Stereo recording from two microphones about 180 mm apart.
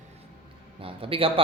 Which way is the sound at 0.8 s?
30° right (ahead or behind).